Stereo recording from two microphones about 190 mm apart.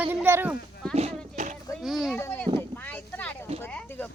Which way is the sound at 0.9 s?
35° right (ahead or behind).